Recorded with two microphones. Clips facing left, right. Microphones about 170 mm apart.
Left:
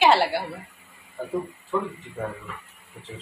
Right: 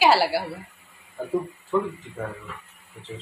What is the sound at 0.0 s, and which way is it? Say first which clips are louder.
Speech: even; 5° right (ahead or behind).